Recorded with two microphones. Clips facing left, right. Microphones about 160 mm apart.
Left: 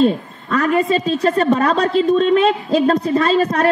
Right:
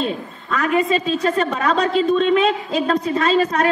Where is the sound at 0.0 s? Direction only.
40° left (ahead or behind).